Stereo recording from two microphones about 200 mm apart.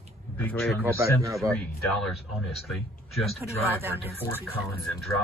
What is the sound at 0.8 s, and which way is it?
Speech, 15° right (ahead or behind).